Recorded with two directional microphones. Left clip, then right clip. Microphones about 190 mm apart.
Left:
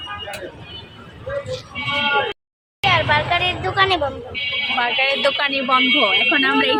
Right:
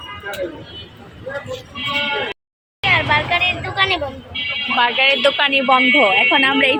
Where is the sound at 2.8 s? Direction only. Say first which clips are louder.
Right 1 dB; 15° left (ahead or behind).